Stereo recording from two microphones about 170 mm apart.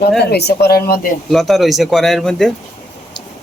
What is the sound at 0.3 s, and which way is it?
Speech, 70° left (ahead or behind).